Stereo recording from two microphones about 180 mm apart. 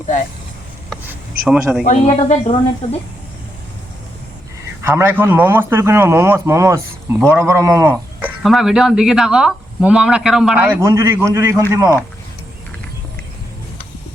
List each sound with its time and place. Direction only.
1.5 s speech: centre (ahead or behind)
1.8 s speech: 40° left (ahead or behind)
4.8 s a man's voice: 15° right (ahead or behind)
8.4 s a man's voice: centre (ahead or behind)